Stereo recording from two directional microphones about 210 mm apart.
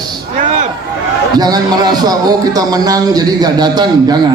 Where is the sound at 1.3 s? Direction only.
20° right (ahead or behind).